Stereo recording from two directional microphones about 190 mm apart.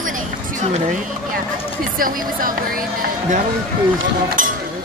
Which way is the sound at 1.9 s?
50° right (ahead or behind).